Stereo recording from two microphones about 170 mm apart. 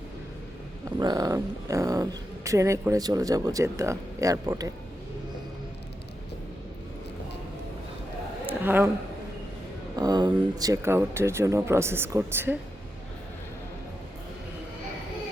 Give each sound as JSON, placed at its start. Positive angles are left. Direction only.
{"t": 0.9, "sound": "speech", "side_deg": -25}
{"t": 8.4, "sound": "a sound", "side_deg": -10}
{"t": 9.9, "sound": "speech", "side_deg": -25}